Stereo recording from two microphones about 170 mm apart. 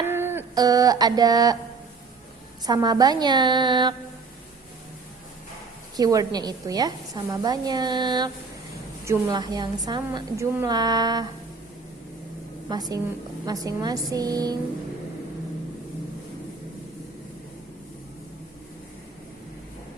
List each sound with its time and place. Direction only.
0.0 s a sound: 15° right (ahead or behind)
2.6 s a woman's voice: 25° right (ahead or behind)
6.0 s a woman's voice: 20° right (ahead or behind)
13.4 s a woman's voice: 20° right (ahead or behind)